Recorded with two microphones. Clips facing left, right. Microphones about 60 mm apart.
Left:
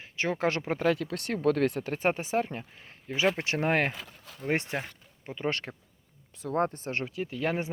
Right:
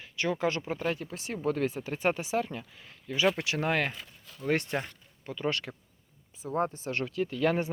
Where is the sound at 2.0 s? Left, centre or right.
Left.